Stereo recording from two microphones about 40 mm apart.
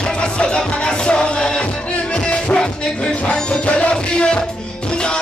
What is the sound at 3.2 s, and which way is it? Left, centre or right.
Music, left.